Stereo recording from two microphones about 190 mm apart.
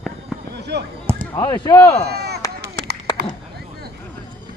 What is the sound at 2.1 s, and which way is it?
Chop, 60° right (ahead or behind).